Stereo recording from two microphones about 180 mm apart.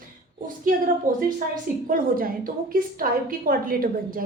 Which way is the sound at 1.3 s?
50° right (ahead or behind).